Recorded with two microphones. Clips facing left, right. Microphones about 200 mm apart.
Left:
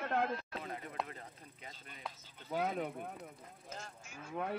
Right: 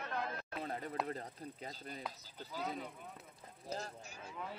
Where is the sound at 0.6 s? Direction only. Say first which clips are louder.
Right 2 dB; 35° right (ahead or behind).